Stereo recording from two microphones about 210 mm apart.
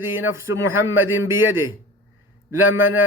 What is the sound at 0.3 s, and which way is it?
Speech, 10° right (ahead or behind).